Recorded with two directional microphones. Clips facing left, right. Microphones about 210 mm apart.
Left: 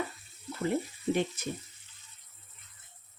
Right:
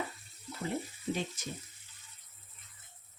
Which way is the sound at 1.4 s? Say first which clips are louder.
Left 6 dB; 60° left (ahead or behind).